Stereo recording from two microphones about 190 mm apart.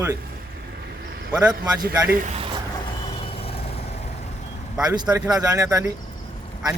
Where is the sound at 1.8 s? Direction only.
50° right (ahead or behind).